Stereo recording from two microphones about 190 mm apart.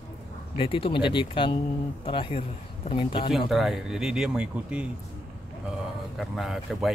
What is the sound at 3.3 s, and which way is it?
Speech, centre (ahead or behind).